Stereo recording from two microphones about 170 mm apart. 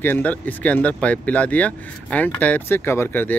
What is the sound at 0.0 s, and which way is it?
Speech, 10° left (ahead or behind).